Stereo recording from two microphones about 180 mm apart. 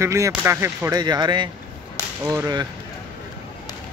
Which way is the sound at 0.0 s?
15° right (ahead or behind).